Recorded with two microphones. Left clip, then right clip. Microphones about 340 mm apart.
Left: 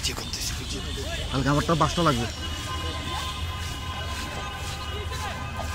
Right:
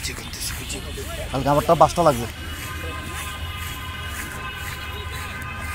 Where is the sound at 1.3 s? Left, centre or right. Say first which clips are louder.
Right 7 dB; centre.